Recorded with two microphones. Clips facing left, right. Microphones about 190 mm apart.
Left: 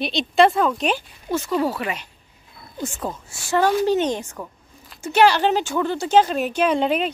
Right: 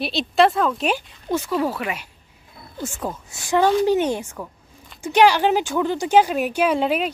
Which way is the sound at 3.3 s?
15° right (ahead or behind).